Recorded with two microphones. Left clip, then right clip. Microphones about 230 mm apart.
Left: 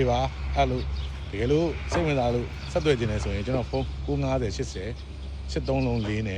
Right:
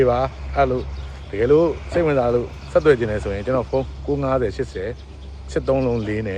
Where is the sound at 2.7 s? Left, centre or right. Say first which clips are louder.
Right 9 dB; right.